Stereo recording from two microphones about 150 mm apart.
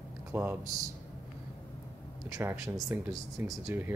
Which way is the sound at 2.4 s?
15° right (ahead or behind).